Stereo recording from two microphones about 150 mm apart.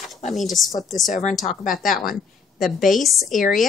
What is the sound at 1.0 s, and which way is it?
Speech, 55° left (ahead or behind).